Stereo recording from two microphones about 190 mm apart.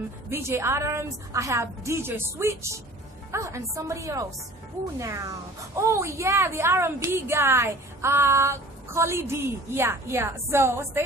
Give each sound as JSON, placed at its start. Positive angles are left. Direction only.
{"t": 0.3, "sound": "a woman's voice", "side_deg": -15}